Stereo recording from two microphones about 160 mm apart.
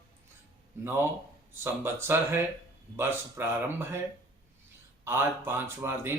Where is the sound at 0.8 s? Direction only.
15° right (ahead or behind).